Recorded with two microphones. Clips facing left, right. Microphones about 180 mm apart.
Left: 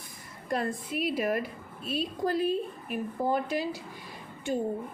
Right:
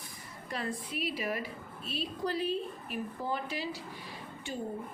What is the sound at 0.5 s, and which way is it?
A woman's voice, 50° left (ahead or behind).